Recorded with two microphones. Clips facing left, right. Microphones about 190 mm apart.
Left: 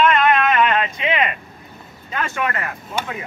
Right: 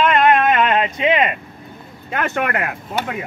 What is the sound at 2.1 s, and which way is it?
Speech, 60° right (ahead or behind).